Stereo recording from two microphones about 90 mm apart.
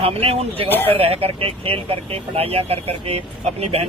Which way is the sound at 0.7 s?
25° left (ahead or behind).